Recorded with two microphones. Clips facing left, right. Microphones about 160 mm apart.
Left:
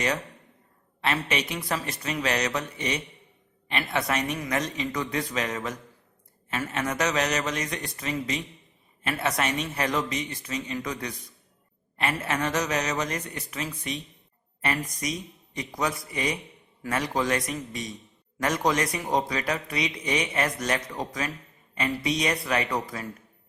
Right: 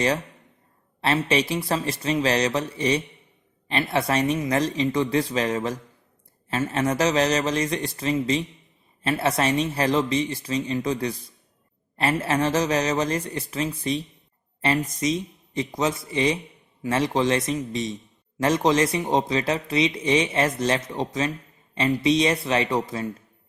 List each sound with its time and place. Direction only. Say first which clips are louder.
1.0 s a woman's voice: right 6 dB; 30° right (ahead or behind)